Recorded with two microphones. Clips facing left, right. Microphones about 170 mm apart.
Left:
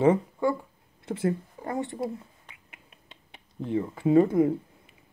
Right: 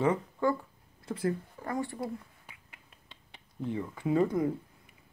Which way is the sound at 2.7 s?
20° left (ahead or behind).